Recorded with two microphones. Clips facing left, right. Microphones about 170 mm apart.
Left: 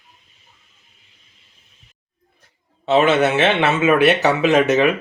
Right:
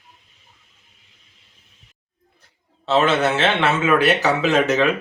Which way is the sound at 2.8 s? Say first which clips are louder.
Left 3 dB; 15° left (ahead or behind).